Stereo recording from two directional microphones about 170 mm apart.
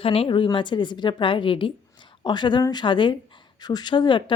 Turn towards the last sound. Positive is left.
turn(degrees=30)  # may be behind; listen again after turning